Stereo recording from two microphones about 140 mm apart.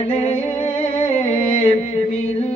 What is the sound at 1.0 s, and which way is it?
Music, 55° left (ahead or behind).